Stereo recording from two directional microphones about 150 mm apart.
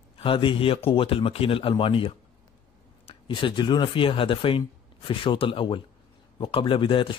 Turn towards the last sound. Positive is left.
turn(degrees=35)  # may be behind; listen again after turning